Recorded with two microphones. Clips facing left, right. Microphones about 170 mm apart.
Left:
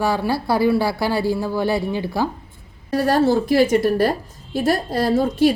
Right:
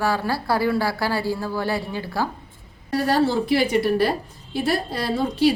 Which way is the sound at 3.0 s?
45° left (ahead or behind).